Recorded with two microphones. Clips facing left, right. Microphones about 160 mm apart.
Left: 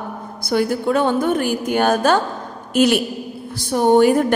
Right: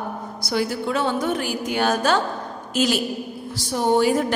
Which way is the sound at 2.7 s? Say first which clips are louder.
Left 6 dB; 60° left (ahead or behind).